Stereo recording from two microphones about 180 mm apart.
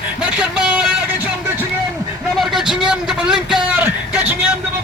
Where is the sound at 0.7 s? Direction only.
5° right (ahead or behind).